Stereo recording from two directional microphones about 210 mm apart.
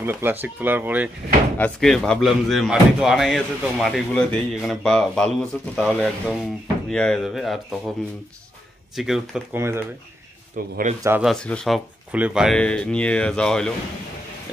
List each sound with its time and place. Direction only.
0.0 s speech: 10° right (ahead or behind)
1.6 s speech: centre (ahead or behind)
8.9 s speech: centre (ahead or behind)
10.6 s a man's voice: 40° right (ahead or behind)
11.0 s speech: 10° right (ahead or behind)
11.2 s speech: 5° left (ahead or behind)